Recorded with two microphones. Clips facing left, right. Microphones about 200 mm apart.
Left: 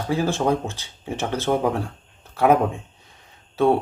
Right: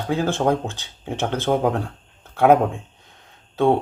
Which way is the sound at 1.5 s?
5° right (ahead or behind).